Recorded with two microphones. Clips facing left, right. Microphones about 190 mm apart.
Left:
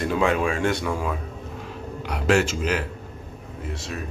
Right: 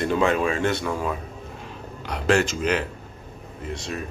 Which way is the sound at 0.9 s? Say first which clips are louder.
Even; centre (ahead or behind).